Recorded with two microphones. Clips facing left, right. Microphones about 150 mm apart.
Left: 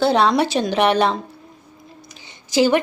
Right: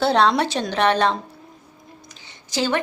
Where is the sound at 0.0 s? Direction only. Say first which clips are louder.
Left 2 dB; 5° left (ahead or behind).